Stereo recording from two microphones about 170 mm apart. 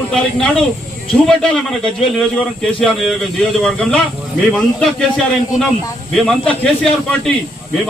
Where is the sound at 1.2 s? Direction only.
5° left (ahead or behind).